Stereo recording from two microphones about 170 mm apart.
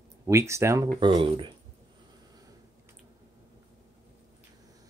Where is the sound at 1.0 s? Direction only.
30° right (ahead or behind).